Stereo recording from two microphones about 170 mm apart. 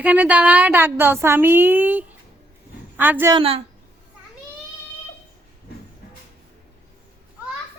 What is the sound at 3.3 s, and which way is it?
Speech, 35° right (ahead or behind).